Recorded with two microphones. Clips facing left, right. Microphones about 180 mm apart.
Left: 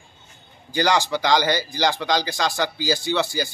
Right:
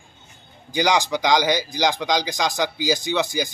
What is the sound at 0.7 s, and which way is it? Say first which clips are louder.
Speech: even; 15° right (ahead or behind).